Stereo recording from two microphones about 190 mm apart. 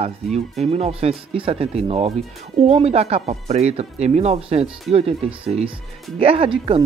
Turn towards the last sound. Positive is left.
turn(degrees=-30)  # may be behind; listen again after turning